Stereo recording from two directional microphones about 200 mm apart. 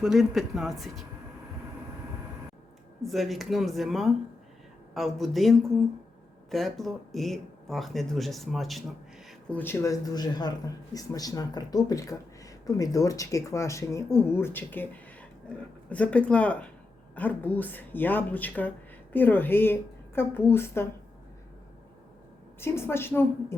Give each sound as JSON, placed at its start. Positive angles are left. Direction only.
{"t": 0.0, "sound": "speech", "side_deg": 0}
{"t": 3.0, "sound": "speech", "side_deg": 0}
{"t": 22.6, "sound": "speech", "side_deg": 10}